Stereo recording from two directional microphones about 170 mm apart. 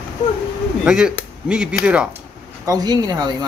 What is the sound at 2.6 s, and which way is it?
Speech, 20° right (ahead or behind).